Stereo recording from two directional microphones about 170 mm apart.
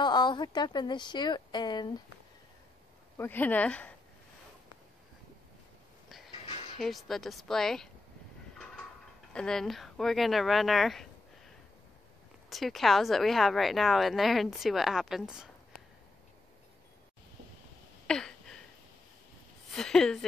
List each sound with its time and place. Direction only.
0.0 s speech: 25° left (ahead or behind)
3.2 s speech: 10° left (ahead or behind)
6.0 s a sound: centre (ahead or behind)
6.4 s music: 35° left (ahead or behind)
6.8 s a woman's voice: centre (ahead or behind)
9.3 s a woman's voice: 5° left (ahead or behind)
12.4 s a woman's voice: centre (ahead or behind)
18.0 s a sound: 5° left (ahead or behind)
19.7 s a woman's voice: 5° left (ahead or behind)